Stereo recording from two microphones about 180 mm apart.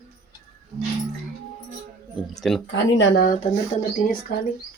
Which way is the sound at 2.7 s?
70° left (ahead or behind).